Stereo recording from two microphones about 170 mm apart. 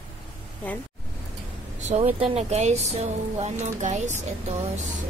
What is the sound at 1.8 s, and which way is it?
Speech, 40° right (ahead or behind).